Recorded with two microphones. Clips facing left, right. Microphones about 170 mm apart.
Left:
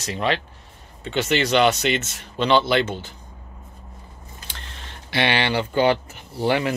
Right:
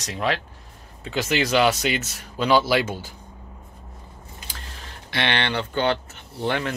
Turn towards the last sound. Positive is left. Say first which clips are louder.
# left 4 dB
turn(degrees=10)  # may be behind; listen again after turning